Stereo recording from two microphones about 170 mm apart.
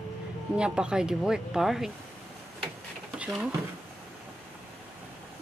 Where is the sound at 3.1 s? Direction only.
5° right (ahead or behind).